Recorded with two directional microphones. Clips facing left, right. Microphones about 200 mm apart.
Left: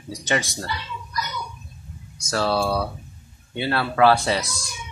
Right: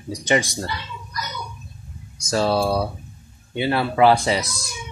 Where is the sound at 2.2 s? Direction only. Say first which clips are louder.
Right 3 dB; 15° right (ahead or behind).